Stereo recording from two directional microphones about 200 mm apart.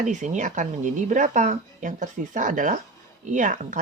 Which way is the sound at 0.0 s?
35° right (ahead or behind).